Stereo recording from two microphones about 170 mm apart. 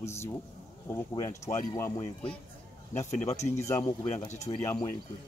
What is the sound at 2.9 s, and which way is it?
Speech, 40° left (ahead or behind).